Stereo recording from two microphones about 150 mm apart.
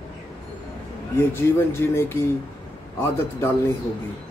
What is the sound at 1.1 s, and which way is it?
Speech, 15° left (ahead or behind).